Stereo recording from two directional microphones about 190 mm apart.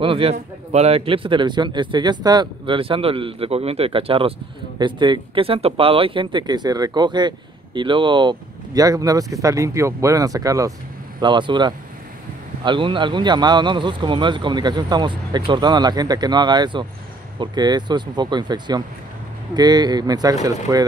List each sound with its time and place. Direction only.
0.0 s a man's voice: 30° right (ahead or behind)